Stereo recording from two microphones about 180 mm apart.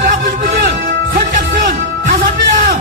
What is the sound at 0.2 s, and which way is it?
Music, 55° right (ahead or behind).